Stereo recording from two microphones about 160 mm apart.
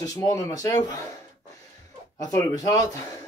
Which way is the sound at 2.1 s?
20° left (ahead or behind).